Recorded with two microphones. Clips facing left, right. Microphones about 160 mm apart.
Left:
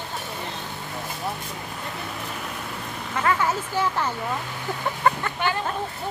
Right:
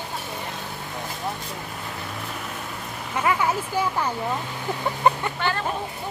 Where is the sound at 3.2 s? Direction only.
15° right (ahead or behind).